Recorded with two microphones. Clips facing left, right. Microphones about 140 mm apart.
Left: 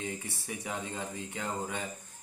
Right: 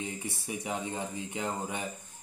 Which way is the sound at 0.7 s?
20° right (ahead or behind).